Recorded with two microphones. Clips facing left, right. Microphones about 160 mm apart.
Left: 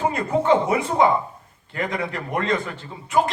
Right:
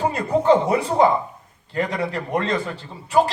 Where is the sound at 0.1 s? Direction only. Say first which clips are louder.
Right 2 dB; 35° right (ahead or behind).